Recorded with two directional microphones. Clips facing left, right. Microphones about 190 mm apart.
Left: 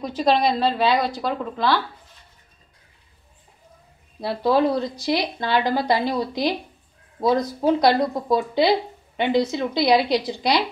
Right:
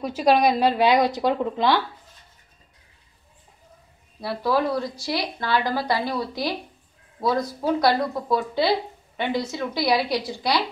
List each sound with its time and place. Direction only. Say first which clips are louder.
0.0 s a woman's voice: right 1 dB; 10° right (ahead or behind)
4.2 s speech: left 4 dB; 25° left (ahead or behind)